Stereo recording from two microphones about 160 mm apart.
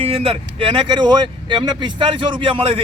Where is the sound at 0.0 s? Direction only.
40° right (ahead or behind).